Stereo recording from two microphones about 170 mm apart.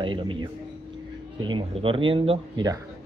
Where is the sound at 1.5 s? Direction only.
30° right (ahead or behind).